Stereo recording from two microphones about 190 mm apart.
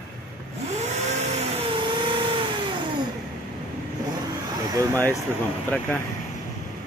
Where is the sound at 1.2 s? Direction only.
35° right (ahead or behind).